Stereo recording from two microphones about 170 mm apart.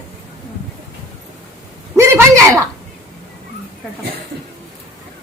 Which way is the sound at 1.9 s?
15° right (ahead or behind).